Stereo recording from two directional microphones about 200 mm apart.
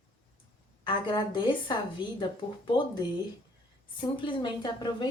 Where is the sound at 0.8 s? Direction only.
20° left (ahead or behind).